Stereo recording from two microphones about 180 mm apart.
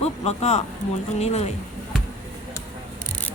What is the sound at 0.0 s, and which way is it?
Speech, 35° left (ahead or behind).